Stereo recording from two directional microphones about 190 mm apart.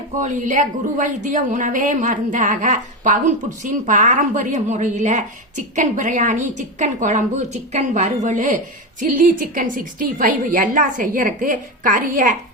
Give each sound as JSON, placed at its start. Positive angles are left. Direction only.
{"t": 0.2, "sound": "a woman's voice", "side_deg": -40}